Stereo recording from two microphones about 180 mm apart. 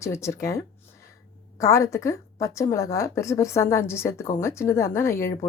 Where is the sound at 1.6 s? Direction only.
15° left (ahead or behind).